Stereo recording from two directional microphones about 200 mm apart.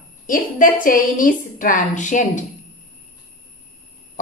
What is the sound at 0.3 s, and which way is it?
A woman's voice, 45° left (ahead or behind).